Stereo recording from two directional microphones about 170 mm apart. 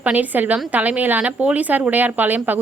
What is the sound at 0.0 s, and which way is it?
Speech, 10° right (ahead or behind).